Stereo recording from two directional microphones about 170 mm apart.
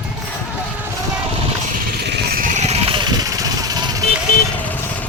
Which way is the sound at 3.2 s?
20° right (ahead or behind).